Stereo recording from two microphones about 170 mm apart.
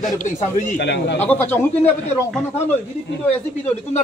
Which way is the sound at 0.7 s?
85° left.